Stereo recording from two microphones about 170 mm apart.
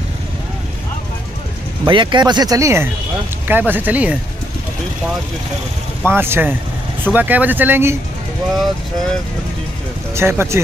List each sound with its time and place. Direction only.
1.9 s speech: 25° right (ahead or behind); by 4.2 s 10° right (ahead or behind)
6.0 s speech: 15° right (ahead or behind)
8.5 s speech: centre (ahead or behind)
10.1 s speech: 15° right (ahead or behind)